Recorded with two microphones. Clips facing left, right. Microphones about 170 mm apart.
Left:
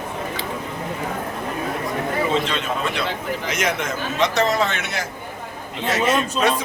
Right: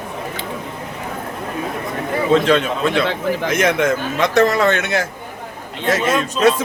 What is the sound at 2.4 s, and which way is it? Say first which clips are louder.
A man's voice: right 8 dB; 60° right (ahead or behind).